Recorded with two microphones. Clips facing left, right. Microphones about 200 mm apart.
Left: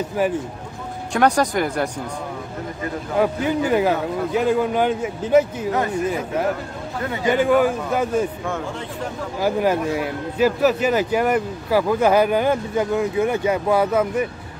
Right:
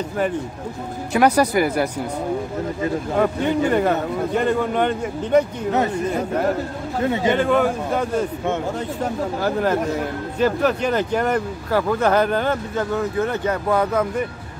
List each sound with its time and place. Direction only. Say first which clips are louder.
1.1 s speech: right 2 dB; 5° right (ahead or behind)
3.2 s a man's voice: even; 5° left (ahead or behind)
7.3 s speech: left 1 dB; 5° left (ahead or behind)
9.4 s speech: left 2 dB; 10° left (ahead or behind)